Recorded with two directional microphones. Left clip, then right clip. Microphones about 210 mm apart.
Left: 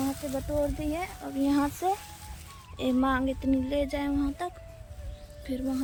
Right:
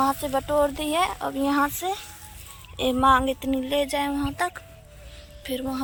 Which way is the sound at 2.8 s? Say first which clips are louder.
Right 8 dB; 5° left (ahead or behind).